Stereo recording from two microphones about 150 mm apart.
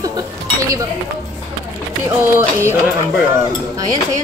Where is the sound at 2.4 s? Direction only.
15° right (ahead or behind).